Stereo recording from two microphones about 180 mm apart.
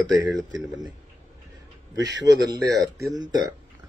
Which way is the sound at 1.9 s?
20° right (ahead or behind).